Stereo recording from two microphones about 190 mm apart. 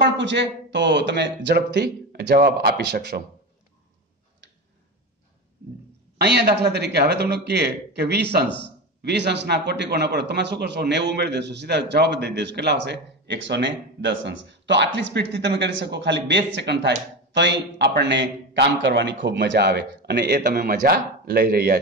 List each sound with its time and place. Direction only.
0.2 s a man's voice: 65° right (ahead or behind)
4.4 s tick-tock: 75° right (ahead or behind)
6.1 s a man's voice: 60° right (ahead or behind)